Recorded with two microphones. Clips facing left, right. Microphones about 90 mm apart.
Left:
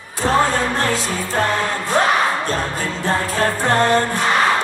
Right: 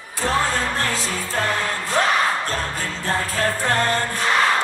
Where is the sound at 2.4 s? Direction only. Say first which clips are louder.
Left 4 dB; 25° left (ahead or behind).